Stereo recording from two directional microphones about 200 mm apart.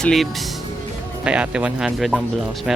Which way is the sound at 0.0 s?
Centre (ahead or behind).